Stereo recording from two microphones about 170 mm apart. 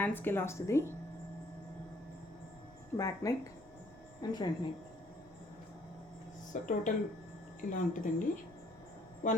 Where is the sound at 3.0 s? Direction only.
20° left (ahead or behind).